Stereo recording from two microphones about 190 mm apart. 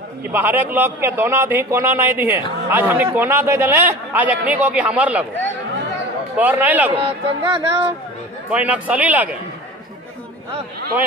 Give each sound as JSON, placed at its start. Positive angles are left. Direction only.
{"t": 0.3, "sound": "a man's voice", "side_deg": -10}
{"t": 6.3, "sound": "a man's voice", "side_deg": -10}
{"t": 7.0, "sound": "speech", "side_deg": -30}
{"t": 8.5, "sound": "a man's voice", "side_deg": -5}